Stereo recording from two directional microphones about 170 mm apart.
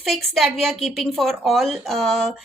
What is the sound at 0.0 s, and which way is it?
Speech, centre (ahead or behind).